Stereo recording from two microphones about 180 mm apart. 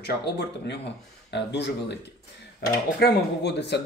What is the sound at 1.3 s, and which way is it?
Speech, 70° left (ahead or behind).